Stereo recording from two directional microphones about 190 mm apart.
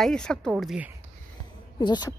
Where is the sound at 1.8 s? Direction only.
20° left (ahead or behind).